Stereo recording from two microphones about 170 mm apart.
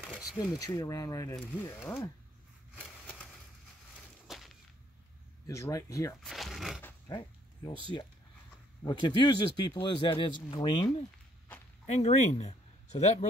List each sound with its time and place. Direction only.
0.0 s a sound: 5° right (ahead or behind)
0.4 s speech: 20° left (ahead or behind)
4.3 s whip: centre (ahead or behind)
5.5 s speech: 20° left (ahead or behind)
6.2 s a sound: centre (ahead or behind)
7.1 s dog: 25° left (ahead or behind)
8.8 s speech: 25° left (ahead or behind); by 13.3 s 40° left (ahead or behind)